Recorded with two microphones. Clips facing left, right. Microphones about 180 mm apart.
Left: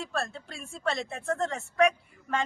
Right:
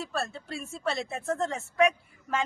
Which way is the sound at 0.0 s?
Centre (ahead or behind).